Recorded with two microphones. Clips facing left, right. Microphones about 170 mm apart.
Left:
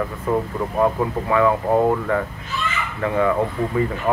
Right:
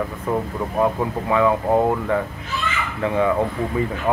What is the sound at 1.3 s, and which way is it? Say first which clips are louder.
Speech: even; 20° right (ahead or behind).